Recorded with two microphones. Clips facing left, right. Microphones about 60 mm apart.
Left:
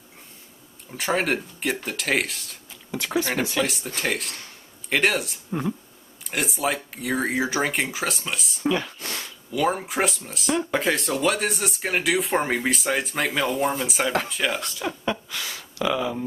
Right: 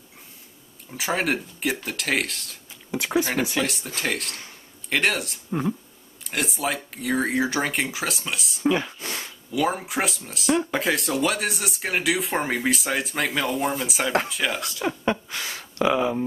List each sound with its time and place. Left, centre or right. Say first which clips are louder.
0.9 s speech: left 1 dB; centre
2.9 s speech: right 1 dB; centre
8.7 s a sound: right 1 dB; centre
9.5 s speech: left 1 dB; centre
15.0 s speech: right 2 dB; right